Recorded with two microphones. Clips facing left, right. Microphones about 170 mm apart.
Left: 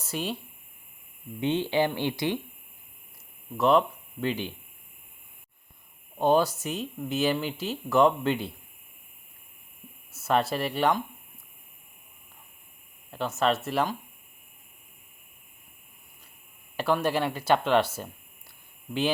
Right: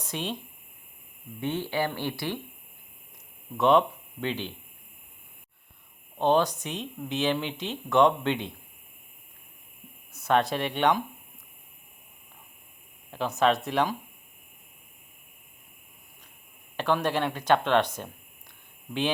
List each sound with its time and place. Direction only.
0.0 s speech: 5° left (ahead or behind)
1.4 s speech: 20° left (ahead or behind)
3.6 s speech: centre (ahead or behind)
6.1 s speech: 10° left (ahead or behind)
10.1 s speech: 5° left (ahead or behind)
13.1 s speech: centre (ahead or behind)
16.7 s speech: 10° left (ahead or behind)